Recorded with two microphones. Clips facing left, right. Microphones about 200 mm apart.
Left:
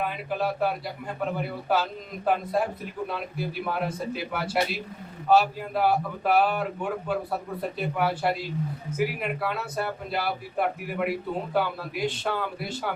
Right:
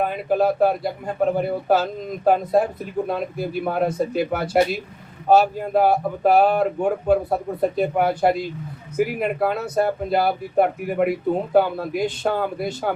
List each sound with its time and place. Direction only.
0.0 s speech: 45° right (ahead or behind)